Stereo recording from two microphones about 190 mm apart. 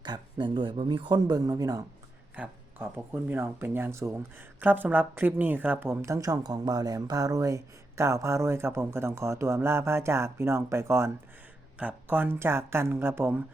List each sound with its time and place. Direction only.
0.0 s speech: 25° right (ahead or behind)
2.3 s speech: 10° right (ahead or behind)